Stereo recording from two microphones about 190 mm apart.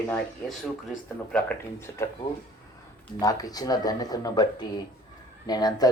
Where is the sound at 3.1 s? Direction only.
20° left (ahead or behind).